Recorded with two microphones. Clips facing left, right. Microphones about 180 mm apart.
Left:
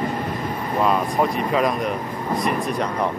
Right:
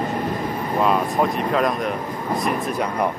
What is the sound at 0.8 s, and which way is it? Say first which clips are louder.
Speech: even; centre (ahead or behind).